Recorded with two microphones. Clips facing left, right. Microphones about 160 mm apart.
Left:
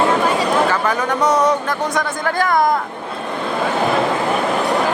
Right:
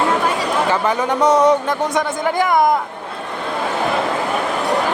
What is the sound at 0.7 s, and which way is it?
Speech, 25° right (ahead or behind).